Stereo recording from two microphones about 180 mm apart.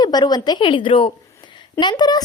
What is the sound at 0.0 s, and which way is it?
A woman's voice, 20° left (ahead or behind).